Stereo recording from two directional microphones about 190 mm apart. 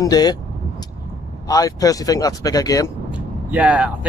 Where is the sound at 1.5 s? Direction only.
20° left (ahead or behind).